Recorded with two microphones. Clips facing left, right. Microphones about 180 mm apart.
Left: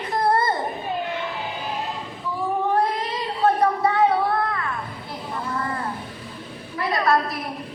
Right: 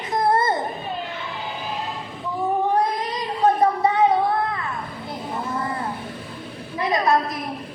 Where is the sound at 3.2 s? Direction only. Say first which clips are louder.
Right 1 dB; 20° right (ahead or behind).